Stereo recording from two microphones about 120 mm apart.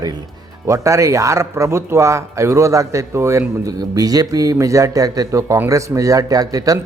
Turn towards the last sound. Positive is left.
turn(degrees=-30)  # may be behind; listen again after turning